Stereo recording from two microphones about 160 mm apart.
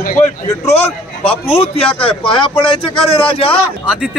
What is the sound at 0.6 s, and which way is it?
A man's voice, 40° left (ahead or behind).